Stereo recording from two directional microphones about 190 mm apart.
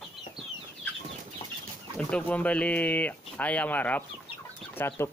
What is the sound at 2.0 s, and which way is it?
Speech, 5° left (ahead or behind).